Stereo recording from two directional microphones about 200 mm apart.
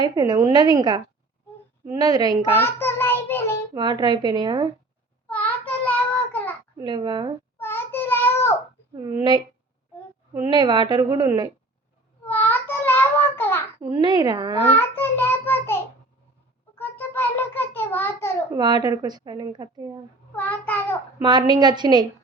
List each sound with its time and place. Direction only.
0.0 s speech: 20° right (ahead or behind)
2.6 s child singing: 10° left (ahead or behind)
3.8 s speech: 20° right (ahead or behind)
5.3 s child singing: 5° left (ahead or behind)
6.7 s speech: 20° right (ahead or behind)
7.6 s child singing: 10° left (ahead or behind)
9.0 s speech: 20° right (ahead or behind)
12.2 s a sound: 10° left (ahead or behind)
13.7 s speech: 20° right (ahead or behind)
14.8 s child singing: 10° left (ahead or behind)
16.7 s a sound: 10° left (ahead or behind)
18.5 s speech: 20° right (ahead or behind)
20.3 s child singing: 10° left (ahead or behind)
21.2 s speech: 20° right (ahead or behind)